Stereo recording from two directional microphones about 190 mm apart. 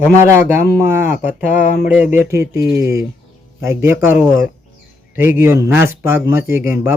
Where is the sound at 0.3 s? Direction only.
15° right (ahead or behind).